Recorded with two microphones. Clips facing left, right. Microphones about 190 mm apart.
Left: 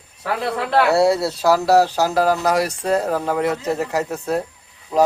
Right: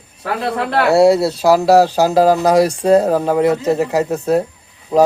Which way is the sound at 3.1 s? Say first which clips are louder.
Right 6 dB; 20° right (ahead or behind).